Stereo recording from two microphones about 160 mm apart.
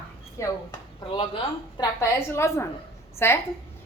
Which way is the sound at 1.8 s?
20° left (ahead or behind).